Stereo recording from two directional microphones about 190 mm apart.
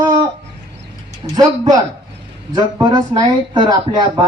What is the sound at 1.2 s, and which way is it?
Speech, 25° right (ahead or behind).